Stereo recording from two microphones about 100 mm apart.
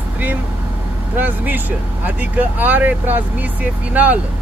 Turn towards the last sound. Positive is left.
turn(degrees=-15)  # may be behind; listen again after turning